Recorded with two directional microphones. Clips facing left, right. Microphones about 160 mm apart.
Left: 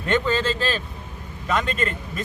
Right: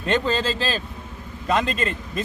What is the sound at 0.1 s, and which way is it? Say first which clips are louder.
A man's voice: even; 30° right (ahead or behind).